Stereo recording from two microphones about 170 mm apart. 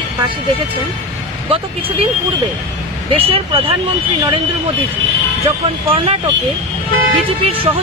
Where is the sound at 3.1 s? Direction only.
35° right (ahead or behind).